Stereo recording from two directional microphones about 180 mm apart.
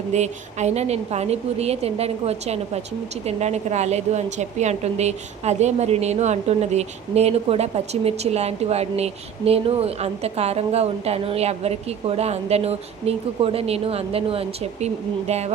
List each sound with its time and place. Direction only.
0.1 s a woman's voice: 40° right (ahead or behind)